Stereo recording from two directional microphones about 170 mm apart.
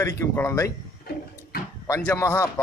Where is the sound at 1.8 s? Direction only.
15° left (ahead or behind).